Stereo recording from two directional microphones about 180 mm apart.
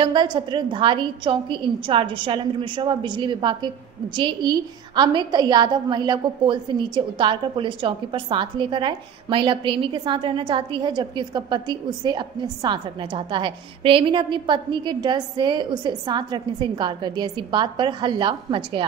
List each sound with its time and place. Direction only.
0.0 s a woman's voice: 25° right (ahead or behind)